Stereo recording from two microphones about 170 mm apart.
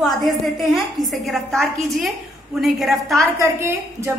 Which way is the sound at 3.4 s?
15° right (ahead or behind).